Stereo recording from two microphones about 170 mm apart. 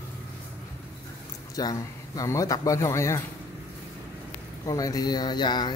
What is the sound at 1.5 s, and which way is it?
Speech, 20° left (ahead or behind).